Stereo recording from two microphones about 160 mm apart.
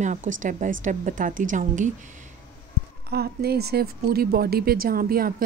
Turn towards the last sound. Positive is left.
turn(degrees=-70)  # may be behind; listen again after turning